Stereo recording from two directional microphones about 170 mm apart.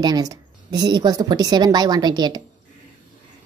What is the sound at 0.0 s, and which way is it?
A woman's voice, 20° right (ahead or behind).